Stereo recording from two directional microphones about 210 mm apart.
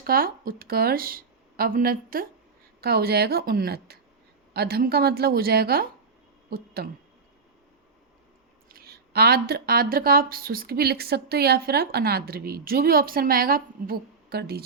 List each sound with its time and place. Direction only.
0.0 s a woman's voice: 45° right (ahead or behind)
8.7 s speech: 45° right (ahead or behind)